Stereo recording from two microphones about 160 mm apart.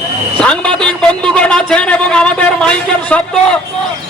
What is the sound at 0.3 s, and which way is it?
A man's voice, 5° left (ahead or behind).